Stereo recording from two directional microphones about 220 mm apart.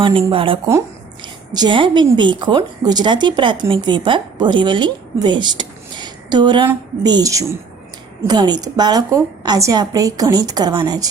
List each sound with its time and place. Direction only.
0.0 s a woman's voice: 25° right (ahead or behind)